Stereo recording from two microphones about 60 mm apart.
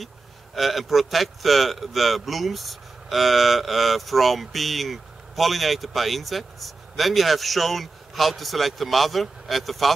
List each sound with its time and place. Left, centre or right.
0.6 s speech: centre